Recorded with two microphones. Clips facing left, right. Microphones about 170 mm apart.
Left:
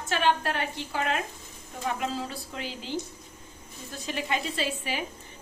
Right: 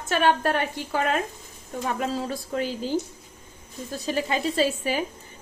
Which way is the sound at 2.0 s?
45° right (ahead or behind).